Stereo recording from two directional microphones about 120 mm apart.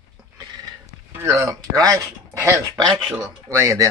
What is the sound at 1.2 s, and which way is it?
Speech, 25° right (ahead or behind).